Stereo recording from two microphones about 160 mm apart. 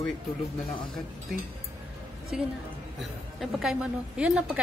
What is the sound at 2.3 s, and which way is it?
A woman's voice, 5° right (ahead or behind).